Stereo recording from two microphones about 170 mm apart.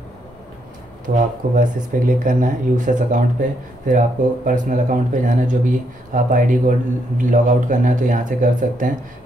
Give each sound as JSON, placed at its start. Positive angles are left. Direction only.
{"t": 1.0, "sound": "speech", "side_deg": -50}